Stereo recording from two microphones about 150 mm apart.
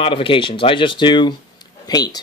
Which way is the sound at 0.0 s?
35° left (ahead or behind).